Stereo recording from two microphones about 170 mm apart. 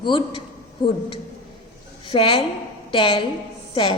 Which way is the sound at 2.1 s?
30° left (ahead or behind).